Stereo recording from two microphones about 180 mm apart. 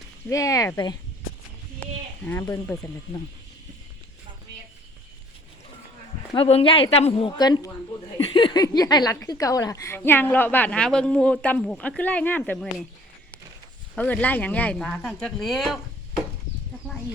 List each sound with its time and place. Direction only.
0.3 s speech: 20° left (ahead or behind)
1.8 s a sound: 10° left (ahead or behind)
6.3 s a woman's voice: 30° left (ahead or behind); by 12.6 s 5° left (ahead or behind)
13.9 s speech: 10° left (ahead or behind)